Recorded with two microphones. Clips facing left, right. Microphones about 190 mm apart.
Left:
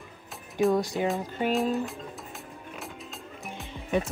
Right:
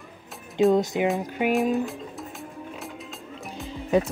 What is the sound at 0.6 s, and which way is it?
Speech, 20° right (ahead or behind).